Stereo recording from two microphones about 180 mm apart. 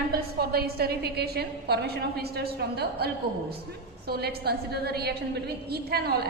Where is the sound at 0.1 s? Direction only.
60° right (ahead or behind).